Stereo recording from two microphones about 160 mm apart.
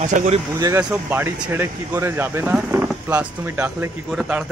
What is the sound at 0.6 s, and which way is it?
Speech, 15° right (ahead or behind).